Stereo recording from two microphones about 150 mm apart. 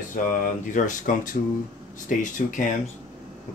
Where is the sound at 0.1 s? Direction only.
60° left (ahead or behind).